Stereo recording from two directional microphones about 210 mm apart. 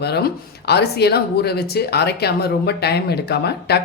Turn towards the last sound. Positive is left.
turn(degrees=50)  # may be behind; listen again after turning